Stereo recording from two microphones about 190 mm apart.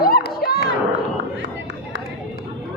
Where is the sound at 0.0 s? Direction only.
55° left (ahead or behind).